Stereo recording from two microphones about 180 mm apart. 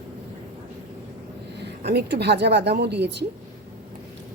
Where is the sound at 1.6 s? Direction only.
65° right (ahead or behind).